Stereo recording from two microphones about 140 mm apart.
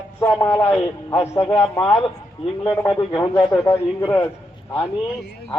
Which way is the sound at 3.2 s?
30° left (ahead or behind).